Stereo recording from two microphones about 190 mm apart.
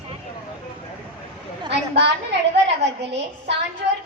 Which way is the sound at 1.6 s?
65° right (ahead or behind).